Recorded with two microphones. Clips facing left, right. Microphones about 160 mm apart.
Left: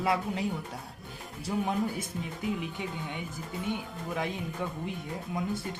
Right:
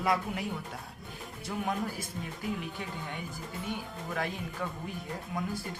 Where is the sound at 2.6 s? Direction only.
20° left (ahead or behind).